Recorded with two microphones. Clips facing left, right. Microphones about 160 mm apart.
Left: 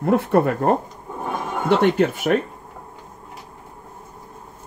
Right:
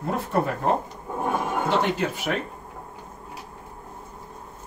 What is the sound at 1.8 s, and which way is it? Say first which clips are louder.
Speech: left 7 dB; 60° left (ahead or behind).